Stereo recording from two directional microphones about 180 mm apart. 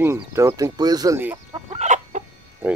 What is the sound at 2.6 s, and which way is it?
Speech, 10° right (ahead or behind).